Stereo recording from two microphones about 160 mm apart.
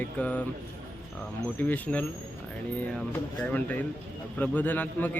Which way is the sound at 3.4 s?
10° left (ahead or behind).